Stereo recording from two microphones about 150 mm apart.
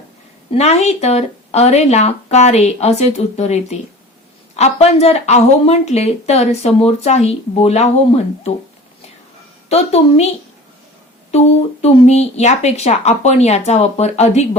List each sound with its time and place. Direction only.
0.5 s a woman's voice: 45° left (ahead or behind)
9.6 s a woman's voice: 45° left (ahead or behind)
11.3 s a woman's voice: 45° left (ahead or behind)